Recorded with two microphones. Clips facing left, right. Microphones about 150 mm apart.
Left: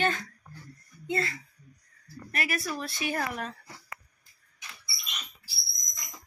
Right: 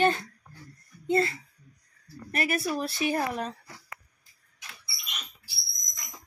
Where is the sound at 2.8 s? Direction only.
35° right (ahead or behind).